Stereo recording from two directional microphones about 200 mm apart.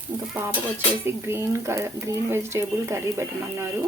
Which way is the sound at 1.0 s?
10° right (ahead or behind).